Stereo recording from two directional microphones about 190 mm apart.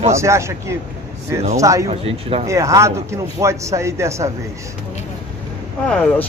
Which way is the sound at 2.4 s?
15° right (ahead or behind).